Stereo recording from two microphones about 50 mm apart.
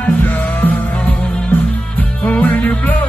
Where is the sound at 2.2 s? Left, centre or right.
Left.